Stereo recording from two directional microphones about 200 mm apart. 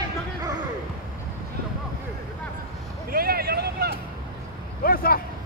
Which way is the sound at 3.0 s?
50° right (ahead or behind).